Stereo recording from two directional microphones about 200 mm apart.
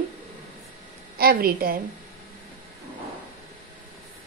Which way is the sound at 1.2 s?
50° right (ahead or behind).